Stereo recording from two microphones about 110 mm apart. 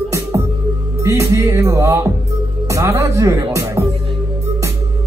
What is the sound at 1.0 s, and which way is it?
Music, 25° right (ahead or behind).